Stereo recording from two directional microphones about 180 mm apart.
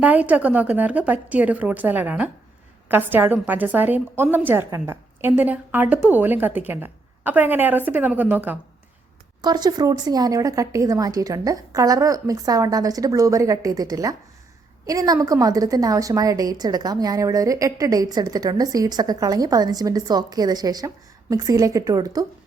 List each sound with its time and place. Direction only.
0.0 s a woman's voice: 10° right (ahead or behind)
9.4 s a woman's voice: 20° right (ahead or behind)